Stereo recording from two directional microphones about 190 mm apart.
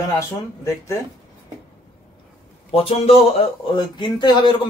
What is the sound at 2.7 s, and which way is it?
Speech, 30° left (ahead or behind).